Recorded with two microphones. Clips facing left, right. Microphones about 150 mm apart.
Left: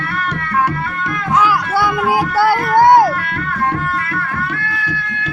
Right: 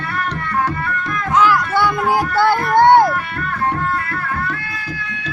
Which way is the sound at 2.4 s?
10° left (ahead or behind).